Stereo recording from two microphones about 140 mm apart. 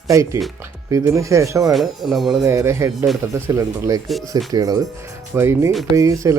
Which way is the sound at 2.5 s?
20° right (ahead or behind).